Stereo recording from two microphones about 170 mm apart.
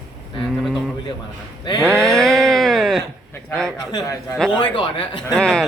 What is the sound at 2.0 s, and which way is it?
Speech, 5° left (ahead or behind).